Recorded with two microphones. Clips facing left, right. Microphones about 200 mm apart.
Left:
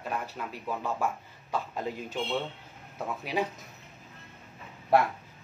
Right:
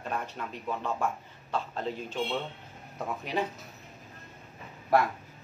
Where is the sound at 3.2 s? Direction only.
10° left (ahead or behind).